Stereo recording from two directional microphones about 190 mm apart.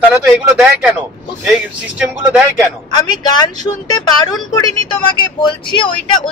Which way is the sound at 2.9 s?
20° left (ahead or behind).